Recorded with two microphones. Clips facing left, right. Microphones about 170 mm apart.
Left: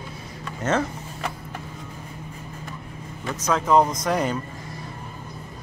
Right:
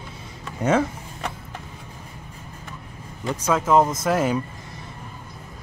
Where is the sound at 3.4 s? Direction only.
5° right (ahead or behind).